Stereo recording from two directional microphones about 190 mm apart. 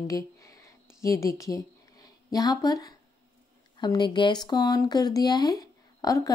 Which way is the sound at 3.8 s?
25° left (ahead or behind).